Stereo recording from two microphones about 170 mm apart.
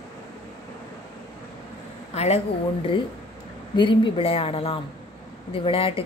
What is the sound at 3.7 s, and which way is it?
A woman's voice, 30° left (ahead or behind).